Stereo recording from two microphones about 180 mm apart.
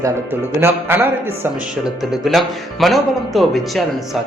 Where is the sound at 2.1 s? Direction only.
Centre (ahead or behind).